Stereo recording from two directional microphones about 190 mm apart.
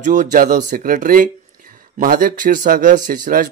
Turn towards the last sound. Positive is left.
turn(degrees=-45)  # may be behind; listen again after turning